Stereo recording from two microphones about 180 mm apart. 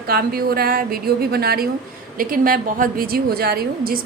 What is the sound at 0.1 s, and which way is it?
A woman's voice, 55° right (ahead or behind).